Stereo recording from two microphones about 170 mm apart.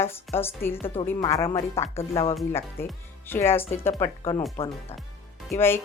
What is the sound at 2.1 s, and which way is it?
Speech, 35° left (ahead or behind).